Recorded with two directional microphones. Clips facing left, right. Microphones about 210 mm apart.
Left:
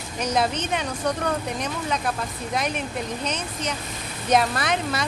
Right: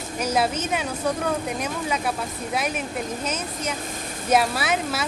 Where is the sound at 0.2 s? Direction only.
5° right (ahead or behind).